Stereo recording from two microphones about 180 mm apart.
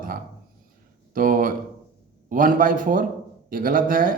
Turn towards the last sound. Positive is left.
turn(degrees=-50)  # may be behind; listen again after turning